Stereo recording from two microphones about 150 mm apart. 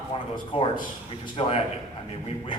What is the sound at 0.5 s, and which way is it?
A man's voice, 35° left (ahead or behind).